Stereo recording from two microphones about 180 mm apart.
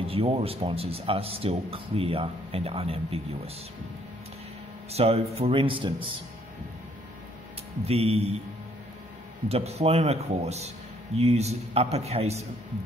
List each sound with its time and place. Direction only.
0.0 s speech: 30° right (ahead or behind)
4.9 s speech: 35° right (ahead or behind)
7.8 s speech: 35° right (ahead or behind)
9.5 s speech: 35° right (ahead or behind)